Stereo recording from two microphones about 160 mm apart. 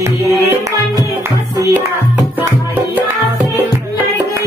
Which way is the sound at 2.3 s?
10° right (ahead or behind).